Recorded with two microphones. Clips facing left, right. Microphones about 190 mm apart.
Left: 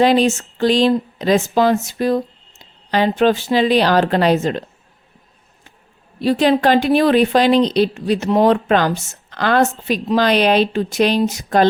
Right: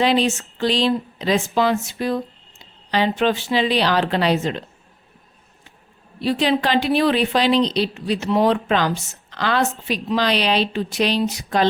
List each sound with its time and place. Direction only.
0.0 s a woman's voice: 45° left (ahead or behind)
6.1 s a woman's voice: 45° left (ahead or behind)